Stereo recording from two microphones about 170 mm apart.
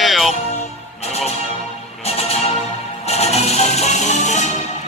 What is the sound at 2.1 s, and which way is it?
Music, 35° left (ahead or behind).